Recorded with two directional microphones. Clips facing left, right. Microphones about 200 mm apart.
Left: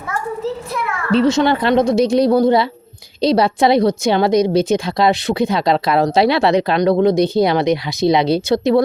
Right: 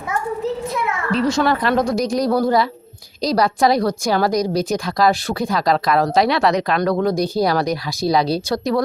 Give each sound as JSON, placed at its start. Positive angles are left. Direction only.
{"t": 1.1, "sound": "a woman's voice", "side_deg": 25}